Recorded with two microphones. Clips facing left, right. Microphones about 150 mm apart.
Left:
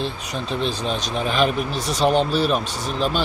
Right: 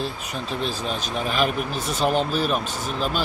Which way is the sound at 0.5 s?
5° right (ahead or behind).